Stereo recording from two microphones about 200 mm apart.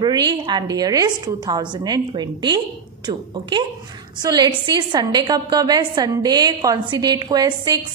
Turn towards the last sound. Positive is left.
turn(degrees=-20)  # may be behind; listen again after turning